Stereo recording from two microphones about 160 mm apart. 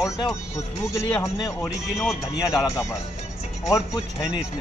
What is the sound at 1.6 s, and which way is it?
Speech, centre (ahead or behind).